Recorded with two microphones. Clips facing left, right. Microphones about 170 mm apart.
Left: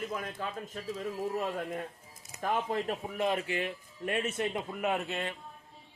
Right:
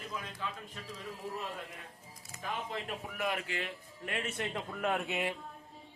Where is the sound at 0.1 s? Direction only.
50° left (ahead or behind).